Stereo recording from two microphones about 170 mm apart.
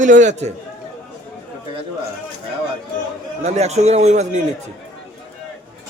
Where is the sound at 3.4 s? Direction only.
40° right (ahead or behind).